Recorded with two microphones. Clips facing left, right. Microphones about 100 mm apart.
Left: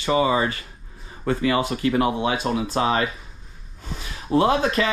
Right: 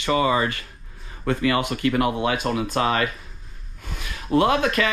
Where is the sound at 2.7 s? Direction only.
30° left (ahead or behind).